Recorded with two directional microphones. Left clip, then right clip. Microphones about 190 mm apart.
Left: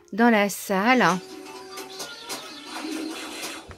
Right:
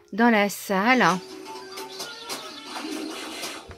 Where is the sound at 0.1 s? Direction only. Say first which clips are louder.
Even; 5° left (ahead or behind).